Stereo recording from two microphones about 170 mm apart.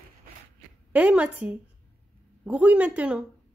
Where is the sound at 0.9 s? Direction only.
10° right (ahead or behind).